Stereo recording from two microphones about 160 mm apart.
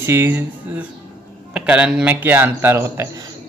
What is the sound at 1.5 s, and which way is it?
A man's voice, 10° right (ahead or behind).